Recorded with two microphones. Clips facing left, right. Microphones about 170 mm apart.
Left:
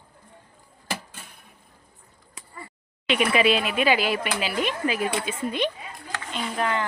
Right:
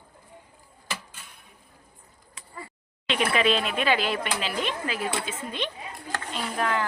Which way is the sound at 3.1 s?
10° left (ahead or behind).